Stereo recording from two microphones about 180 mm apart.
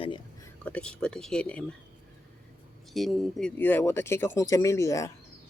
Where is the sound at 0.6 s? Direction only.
5° left (ahead or behind).